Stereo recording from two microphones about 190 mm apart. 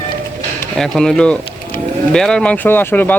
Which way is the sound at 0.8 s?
5° left (ahead or behind).